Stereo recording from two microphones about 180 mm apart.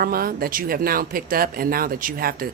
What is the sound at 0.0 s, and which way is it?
Speech, 55° right (ahead or behind).